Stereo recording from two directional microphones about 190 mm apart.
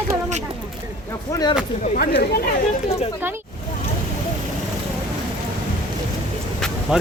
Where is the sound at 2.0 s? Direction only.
55° left (ahead or behind).